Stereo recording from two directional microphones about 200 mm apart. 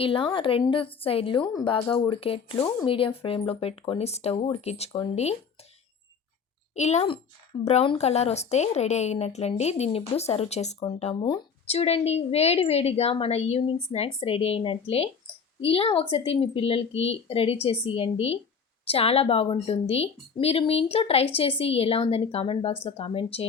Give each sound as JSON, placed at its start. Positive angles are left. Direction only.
{"t": 0.0, "sound": "a woman's voice", "side_deg": 25}
{"t": 6.7, "sound": "a woman's voice", "side_deg": 35}